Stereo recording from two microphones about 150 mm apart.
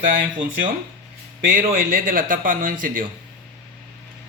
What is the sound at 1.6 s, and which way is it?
Speech, 70° right (ahead or behind).